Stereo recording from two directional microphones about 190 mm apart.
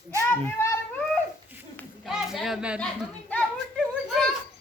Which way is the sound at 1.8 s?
Centre (ahead or behind).